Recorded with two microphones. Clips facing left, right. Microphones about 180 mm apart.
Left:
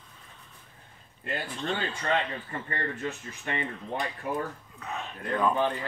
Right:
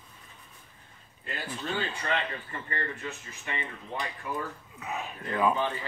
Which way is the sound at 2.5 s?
45° left (ahead or behind).